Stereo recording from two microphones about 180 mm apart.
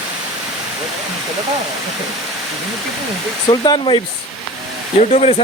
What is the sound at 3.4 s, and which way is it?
Speech, 25° left (ahead or behind).